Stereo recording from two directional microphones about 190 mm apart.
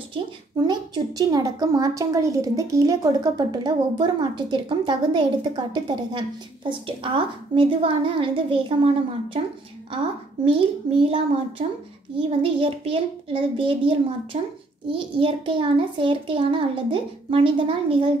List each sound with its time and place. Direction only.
0.1 s a woman's voice: 20° right (ahead or behind)
10.4 s a woman's voice: 30° right (ahead or behind)